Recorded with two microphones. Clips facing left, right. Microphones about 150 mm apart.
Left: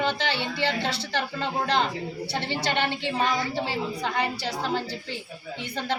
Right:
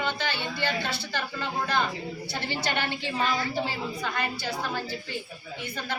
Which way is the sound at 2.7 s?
20° left (ahead or behind).